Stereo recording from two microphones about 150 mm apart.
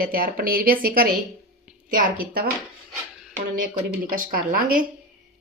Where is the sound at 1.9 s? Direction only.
70° right (ahead or behind).